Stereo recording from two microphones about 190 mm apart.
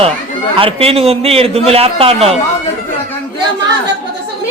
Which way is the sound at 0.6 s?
30° right (ahead or behind).